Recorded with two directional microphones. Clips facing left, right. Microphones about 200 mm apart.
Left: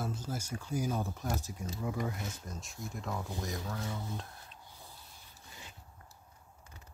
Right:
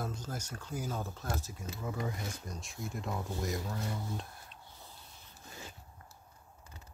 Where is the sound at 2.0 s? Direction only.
Centre (ahead or behind).